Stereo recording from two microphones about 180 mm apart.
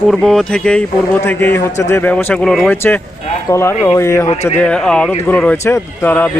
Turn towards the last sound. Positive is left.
turn(degrees=10)  # may be behind; listen again after turning